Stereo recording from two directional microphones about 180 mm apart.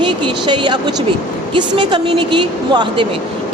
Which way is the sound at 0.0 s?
25° right (ahead or behind).